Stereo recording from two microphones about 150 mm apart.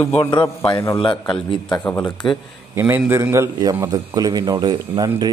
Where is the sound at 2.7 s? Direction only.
15° right (ahead or behind).